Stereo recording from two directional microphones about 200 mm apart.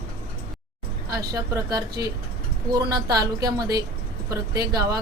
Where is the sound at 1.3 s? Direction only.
15° right (ahead or behind).